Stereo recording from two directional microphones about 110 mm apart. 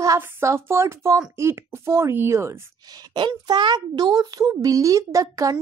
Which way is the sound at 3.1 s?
40° right (ahead or behind).